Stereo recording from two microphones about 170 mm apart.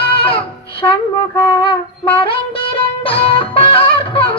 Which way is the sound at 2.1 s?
30° left (ahead or behind).